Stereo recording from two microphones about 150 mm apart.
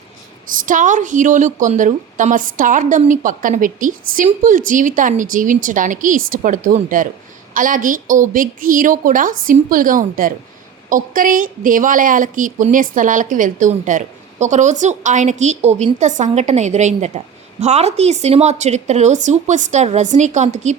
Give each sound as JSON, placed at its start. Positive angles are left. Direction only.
{"t": 0.6, "sound": "a woman's voice", "side_deg": -60}